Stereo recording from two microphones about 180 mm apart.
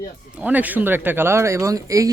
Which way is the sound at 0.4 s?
10° right (ahead or behind).